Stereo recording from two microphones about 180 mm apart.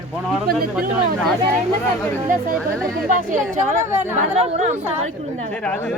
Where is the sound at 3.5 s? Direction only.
45° right (ahead or behind).